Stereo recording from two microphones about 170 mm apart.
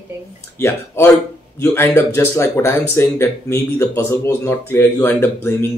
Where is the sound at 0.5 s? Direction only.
15° left (ahead or behind).